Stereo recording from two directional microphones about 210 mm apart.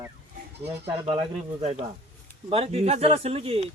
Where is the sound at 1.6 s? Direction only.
30° right (ahead or behind).